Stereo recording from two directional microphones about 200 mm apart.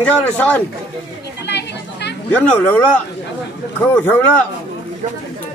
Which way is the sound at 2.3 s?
5° left (ahead or behind).